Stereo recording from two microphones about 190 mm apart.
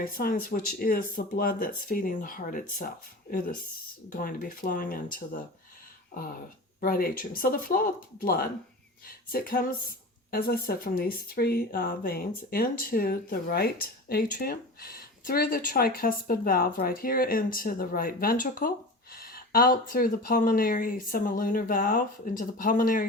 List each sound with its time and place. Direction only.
0.0 s speech: 50° left (ahead or behind)
6.7 s speech: 50° left (ahead or behind)